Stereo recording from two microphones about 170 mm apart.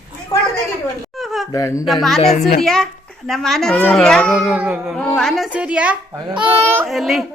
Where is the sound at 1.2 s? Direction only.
Centre (ahead or behind).